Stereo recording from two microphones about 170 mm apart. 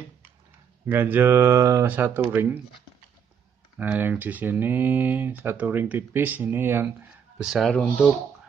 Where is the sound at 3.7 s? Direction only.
10° right (ahead or behind).